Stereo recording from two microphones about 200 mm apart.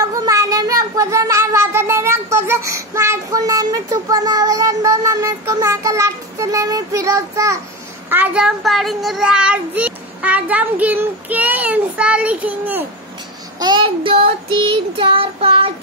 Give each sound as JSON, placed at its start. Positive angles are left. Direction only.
{"t": 0.0, "sound": "a sound", "side_deg": -15}
{"t": 8.1, "sound": "a child's voice", "side_deg": -5}
{"t": 13.6, "sound": "child singing", "side_deg": -25}